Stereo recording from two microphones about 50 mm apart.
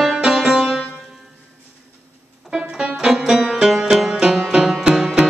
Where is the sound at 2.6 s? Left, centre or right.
Centre.